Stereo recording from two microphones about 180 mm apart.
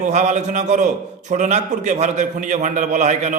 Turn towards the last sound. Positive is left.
turn(degrees=-40)  # may be behind; listen again after turning